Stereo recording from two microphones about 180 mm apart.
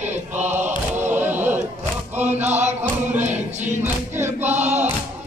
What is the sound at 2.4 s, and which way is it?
Music, 40° right (ahead or behind).